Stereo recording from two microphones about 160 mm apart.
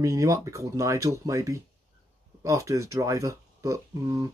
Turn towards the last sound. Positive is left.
turn(degrees=-20)  # may be behind; listen again after turning